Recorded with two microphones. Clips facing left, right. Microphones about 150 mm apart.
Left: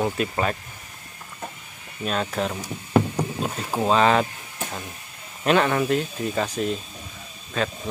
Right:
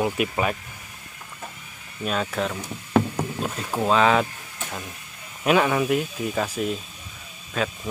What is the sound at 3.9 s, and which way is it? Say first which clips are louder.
Speech: even; centre (ahead or behind).